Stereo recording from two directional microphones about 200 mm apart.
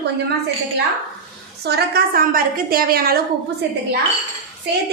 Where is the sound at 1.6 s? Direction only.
55° right (ahead or behind).